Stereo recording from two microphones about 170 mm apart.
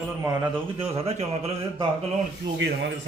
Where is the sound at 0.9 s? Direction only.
35° right (ahead or behind).